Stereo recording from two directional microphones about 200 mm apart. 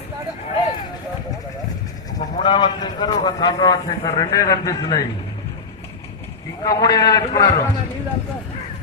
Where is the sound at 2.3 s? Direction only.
25° left (ahead or behind).